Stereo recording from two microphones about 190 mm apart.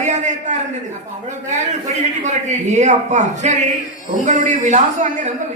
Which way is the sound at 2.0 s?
40° right (ahead or behind).